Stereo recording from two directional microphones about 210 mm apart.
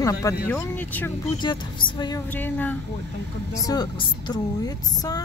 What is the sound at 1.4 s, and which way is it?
Speech, 20° left (ahead or behind).